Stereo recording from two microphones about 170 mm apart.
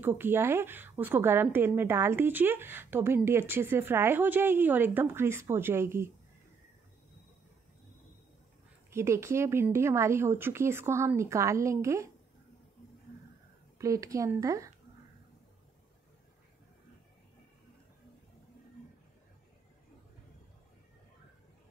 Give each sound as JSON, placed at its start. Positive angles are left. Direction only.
{"t": 0.0, "sound": "a woman's voice", "side_deg": -10}
{"t": 8.9, "sound": "a woman's voice", "side_deg": -15}
{"t": 13.7, "sound": "speech", "side_deg": -20}